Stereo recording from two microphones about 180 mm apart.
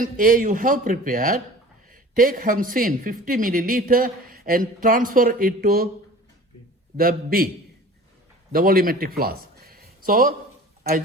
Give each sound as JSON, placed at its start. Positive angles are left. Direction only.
{"t": 0.0, "sound": "speech", "side_deg": -50}
{"t": 6.9, "sound": "a man's voice", "side_deg": -55}
{"t": 8.5, "sound": "a man's voice", "side_deg": -55}